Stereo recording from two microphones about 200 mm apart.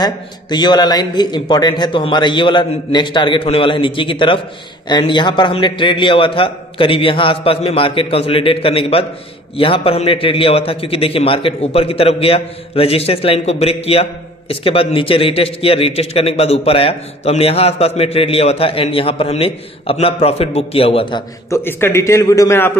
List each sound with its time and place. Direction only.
0.0 s a man's voice: 20° left (ahead or behind)
21.5 s a man's voice: 10° left (ahead or behind)